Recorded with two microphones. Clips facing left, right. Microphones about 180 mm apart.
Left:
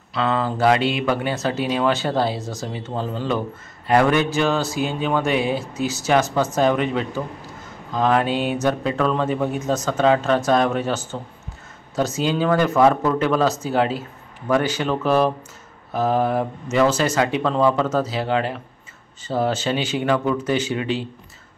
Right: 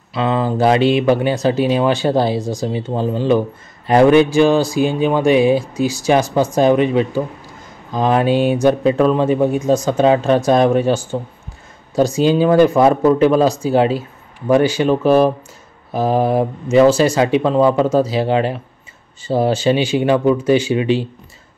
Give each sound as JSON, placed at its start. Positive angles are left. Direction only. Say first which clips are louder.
{"t": 0.1, "sound": "speech", "louder": "right 4 dB", "side_deg": -15}